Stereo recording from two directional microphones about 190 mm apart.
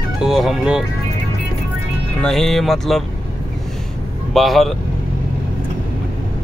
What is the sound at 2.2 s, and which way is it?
Speech, 5° left (ahead or behind).